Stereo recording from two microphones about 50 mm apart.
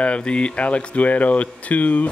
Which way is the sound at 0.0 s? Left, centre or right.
Left.